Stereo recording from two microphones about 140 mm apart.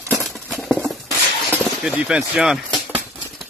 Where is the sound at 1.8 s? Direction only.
5° right (ahead or behind).